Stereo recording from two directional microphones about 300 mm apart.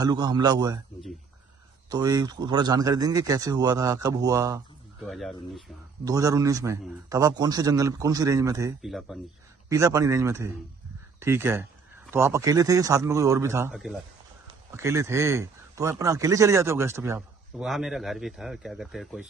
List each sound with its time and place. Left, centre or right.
0.0 s speech: centre
1.9 s speech: centre
5.0 s speech: centre
6.0 s speech: centre